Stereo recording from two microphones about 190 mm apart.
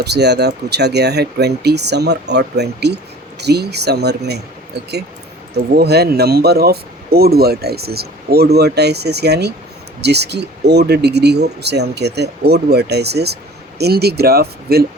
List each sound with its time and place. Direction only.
0.0 s speech: 60° right (ahead or behind)
5.7 s speech: 60° right (ahead or behind)